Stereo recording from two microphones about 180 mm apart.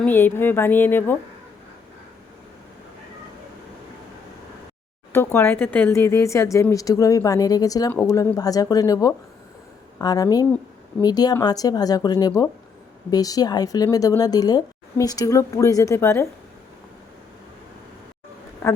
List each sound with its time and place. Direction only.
0.0 s speech: 10° left (ahead or behind)
5.1 s speech: 15° left (ahead or behind)